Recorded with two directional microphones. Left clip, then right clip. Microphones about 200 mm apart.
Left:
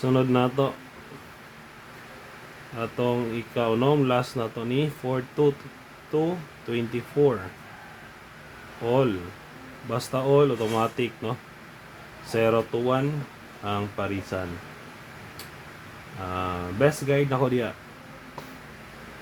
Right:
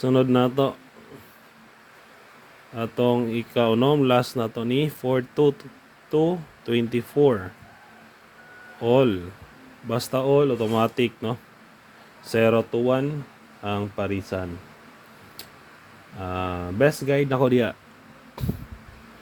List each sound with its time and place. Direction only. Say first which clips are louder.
0.0 s speech: right 3 dB; 30° right (ahead or behind)
2.7 s speech: right 4 dB; 35° right (ahead or behind)
8.8 s speech: right 4 dB; 35° right (ahead or behind)
16.3 s speech: right 1 dB; 35° right (ahead or behind)
18.4 s a sound: right 7 dB; 25° right (ahead or behind)